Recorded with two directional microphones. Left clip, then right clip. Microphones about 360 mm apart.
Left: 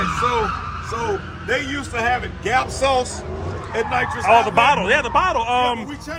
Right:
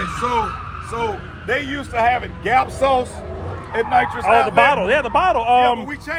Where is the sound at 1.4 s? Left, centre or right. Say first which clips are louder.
Right 2 dB; centre.